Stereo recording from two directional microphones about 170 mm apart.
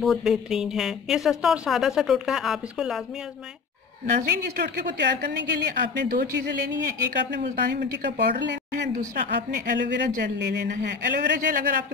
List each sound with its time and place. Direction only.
0.0 s speech: centre (ahead or behind)
4.0 s speech: 50° right (ahead or behind)
4.7 s a woman's voice: 85° right
8.9 s a woman's voice: 60° right (ahead or behind)
11.4 s speech: 50° right (ahead or behind)